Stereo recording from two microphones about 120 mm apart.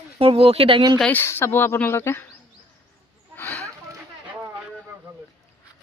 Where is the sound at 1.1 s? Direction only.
20° left (ahead or behind).